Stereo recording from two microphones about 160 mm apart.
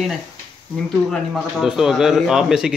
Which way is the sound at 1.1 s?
Centre (ahead or behind).